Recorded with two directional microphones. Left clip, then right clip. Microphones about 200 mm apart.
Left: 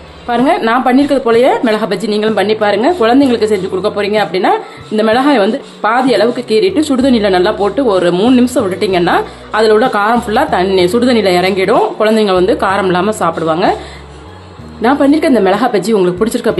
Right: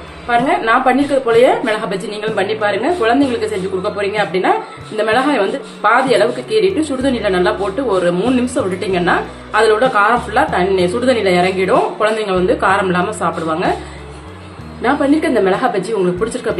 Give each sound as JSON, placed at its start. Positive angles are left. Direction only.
{"t": 0.5, "sound": "a woman's voice", "side_deg": 50}
{"t": 14.8, "sound": "a woman's voice", "side_deg": 45}